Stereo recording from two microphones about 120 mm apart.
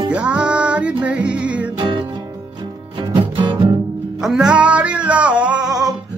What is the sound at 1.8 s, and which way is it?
Music, 45° right (ahead or behind).